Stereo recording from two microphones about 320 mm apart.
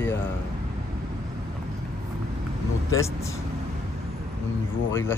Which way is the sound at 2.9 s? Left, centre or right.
Centre.